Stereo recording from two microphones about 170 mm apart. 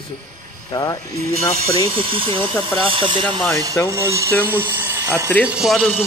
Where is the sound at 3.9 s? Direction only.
15° right (ahead or behind); by 5.9 s centre (ahead or behind).